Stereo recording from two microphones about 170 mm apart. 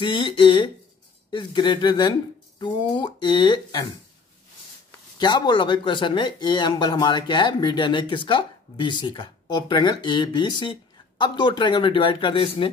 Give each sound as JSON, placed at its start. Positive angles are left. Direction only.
{"t": 0.0, "sound": "speech", "side_deg": 30}
{"t": 5.2, "sound": "speech", "side_deg": 25}